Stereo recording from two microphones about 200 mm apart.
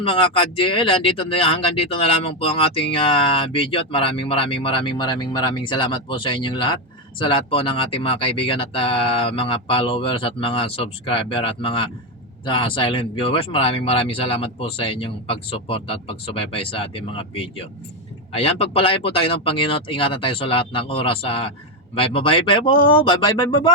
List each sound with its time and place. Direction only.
0.0 s speech: 25° left (ahead or behind)